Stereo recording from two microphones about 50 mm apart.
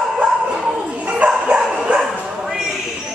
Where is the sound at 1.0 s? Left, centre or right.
Right.